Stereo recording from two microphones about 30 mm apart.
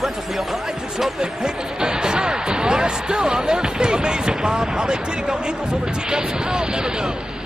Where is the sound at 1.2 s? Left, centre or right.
Right.